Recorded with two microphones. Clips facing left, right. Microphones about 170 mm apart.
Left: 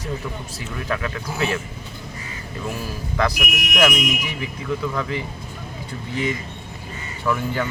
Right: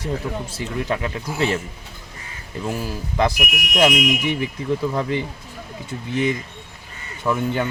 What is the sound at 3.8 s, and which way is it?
Speech, 25° right (ahead or behind).